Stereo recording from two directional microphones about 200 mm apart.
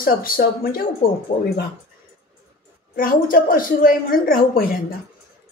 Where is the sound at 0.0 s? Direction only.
45° left (ahead or behind).